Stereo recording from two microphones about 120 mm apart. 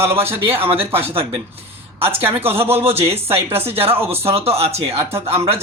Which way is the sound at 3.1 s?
55° right (ahead or behind).